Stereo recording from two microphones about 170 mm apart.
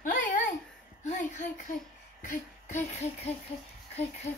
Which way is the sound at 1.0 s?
45° left (ahead or behind).